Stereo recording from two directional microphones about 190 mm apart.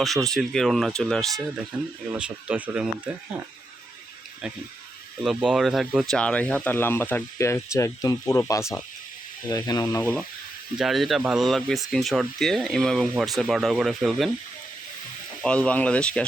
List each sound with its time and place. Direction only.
0.0 s speech: centre (ahead or behind)
5.2 s speech: centre (ahead or behind)
10.8 s speech: centre (ahead or behind)
15.4 s speech: 5° left (ahead or behind)